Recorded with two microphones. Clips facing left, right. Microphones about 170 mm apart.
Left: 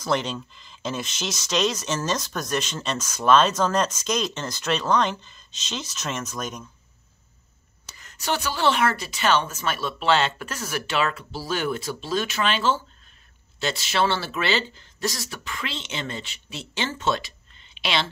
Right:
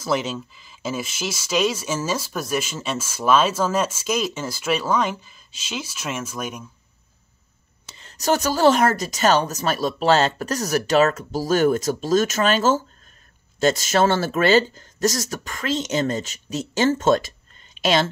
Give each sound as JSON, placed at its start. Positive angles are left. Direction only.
{"t": 0.0, "sound": "speech", "side_deg": -5}
{"t": 7.9, "sound": "speech", "side_deg": -30}